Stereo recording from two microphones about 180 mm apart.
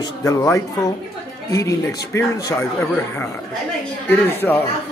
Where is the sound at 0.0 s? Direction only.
20° left (ahead or behind).